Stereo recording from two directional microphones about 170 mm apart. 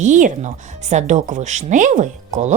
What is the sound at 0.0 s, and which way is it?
A woman's voice, 50° right (ahead or behind).